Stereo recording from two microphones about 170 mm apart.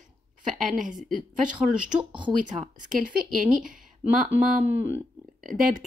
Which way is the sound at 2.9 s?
50° right (ahead or behind).